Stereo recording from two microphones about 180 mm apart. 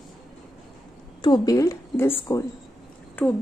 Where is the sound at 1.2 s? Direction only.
20° left (ahead or behind).